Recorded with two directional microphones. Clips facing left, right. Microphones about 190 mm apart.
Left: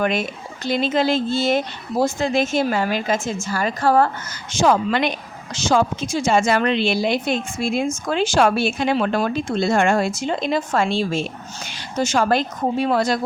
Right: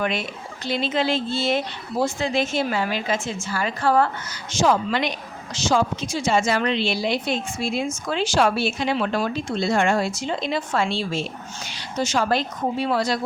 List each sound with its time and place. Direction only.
0.0 s a woman's voice: 45° left (ahead or behind)
4.5 s a woman's voice: 55° left (ahead or behind)